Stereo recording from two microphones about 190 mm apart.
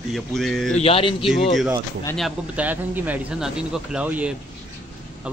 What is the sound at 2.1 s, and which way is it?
A man's voice, 5° right (ahead or behind).